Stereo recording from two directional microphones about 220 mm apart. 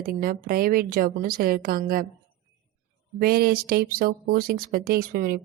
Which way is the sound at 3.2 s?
45° right (ahead or behind).